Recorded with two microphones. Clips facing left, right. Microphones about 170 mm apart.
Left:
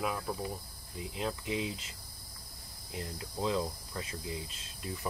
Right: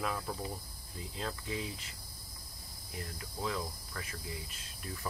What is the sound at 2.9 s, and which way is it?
Speech, 20° left (ahead or behind).